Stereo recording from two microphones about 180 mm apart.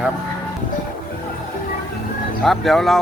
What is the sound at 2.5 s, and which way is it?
Speech, centre (ahead or behind).